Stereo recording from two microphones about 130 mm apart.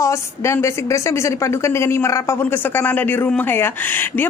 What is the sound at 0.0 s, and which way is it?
A woman's voice, 20° left (ahead or behind).